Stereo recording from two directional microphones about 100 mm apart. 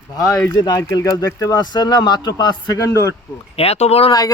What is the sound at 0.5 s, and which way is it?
Speech, 40° left (ahead or behind).